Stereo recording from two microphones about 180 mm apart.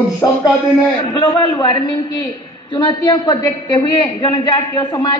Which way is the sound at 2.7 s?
25° left (ahead or behind).